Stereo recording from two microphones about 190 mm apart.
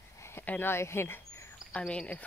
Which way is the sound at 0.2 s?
10° left (ahead or behind).